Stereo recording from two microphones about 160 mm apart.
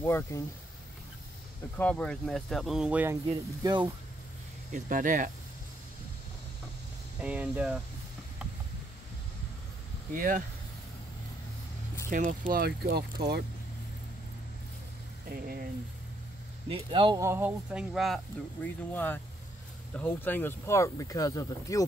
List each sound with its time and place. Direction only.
0.0 s speech: 15° left (ahead or behind)
1.8 s speech: 10° left (ahead or behind); by 3.2 s 10° right (ahead or behind)
3.3 s speech: 30° right (ahead or behind)
4.7 s speech: 55° right (ahead or behind)
7.2 s speech: 5° right (ahead or behind)
10.1 s speech: 60° right (ahead or behind)
12.1 s speech: 55° right (ahead or behind); by 13.0 s 75° right (ahead or behind)
15.3 s speech: 65° right (ahead or behind)
16.6 s speech: 30° right (ahead or behind); by 21.8 s 20° left (ahead or behind)